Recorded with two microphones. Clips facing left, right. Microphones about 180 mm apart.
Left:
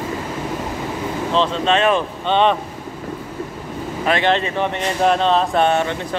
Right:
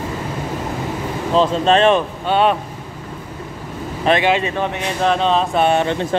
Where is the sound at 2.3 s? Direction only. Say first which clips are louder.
Even; 5° right (ahead or behind).